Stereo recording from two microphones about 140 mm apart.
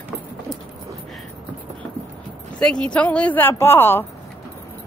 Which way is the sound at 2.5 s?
5° left (ahead or behind).